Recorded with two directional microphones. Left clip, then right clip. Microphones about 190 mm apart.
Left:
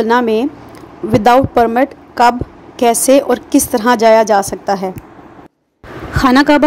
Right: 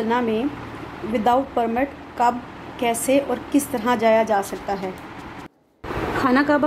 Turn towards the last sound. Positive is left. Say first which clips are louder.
# left 9 dB
turn(degrees=45)  # may be behind; listen again after turning